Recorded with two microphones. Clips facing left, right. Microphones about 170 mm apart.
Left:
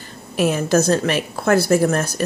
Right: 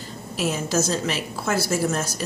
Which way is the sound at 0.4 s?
60° left (ahead or behind).